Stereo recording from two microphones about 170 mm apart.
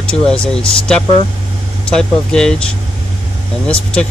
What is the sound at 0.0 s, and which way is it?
Speech, 5° left (ahead or behind).